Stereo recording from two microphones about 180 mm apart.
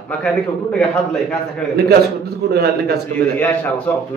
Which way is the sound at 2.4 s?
65° right (ahead or behind).